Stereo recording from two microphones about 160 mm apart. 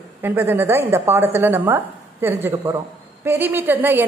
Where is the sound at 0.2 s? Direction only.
10° right (ahead or behind).